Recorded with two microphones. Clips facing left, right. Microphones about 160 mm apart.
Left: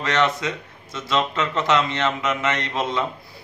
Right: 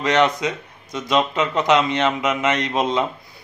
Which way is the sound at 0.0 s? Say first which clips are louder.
Right 4 dB; 15° right (ahead or behind).